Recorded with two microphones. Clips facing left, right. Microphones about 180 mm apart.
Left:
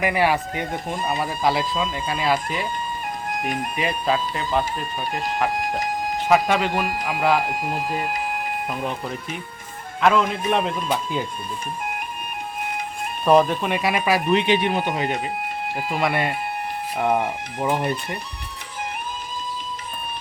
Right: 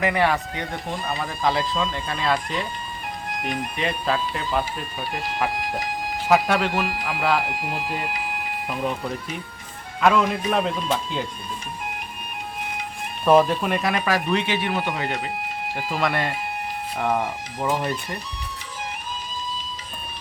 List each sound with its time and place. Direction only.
0.0 s speech: 10° left (ahead or behind)
3.4 s speech: 45° left (ahead or behind)
3.8 s speech: 5° left (ahead or behind)
6.2 s speech: centre (ahead or behind)
7.4 s speech: 45° left (ahead or behind)
8.7 s speech: centre (ahead or behind)
10.0 s speech: centre (ahead or behind)
13.2 s speech: centre (ahead or behind); by 14.8 s 20° left (ahead or behind)
15.9 s speech: 5° left (ahead or behind)